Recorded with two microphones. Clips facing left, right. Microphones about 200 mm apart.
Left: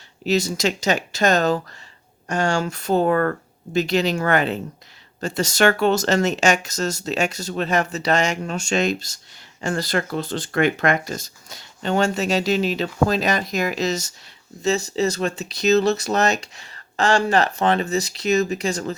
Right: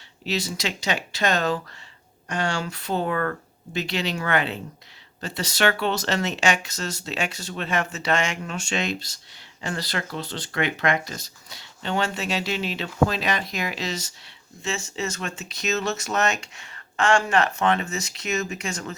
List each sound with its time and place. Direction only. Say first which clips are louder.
0.3 s speech: left 7 dB; 45° left (ahead or behind)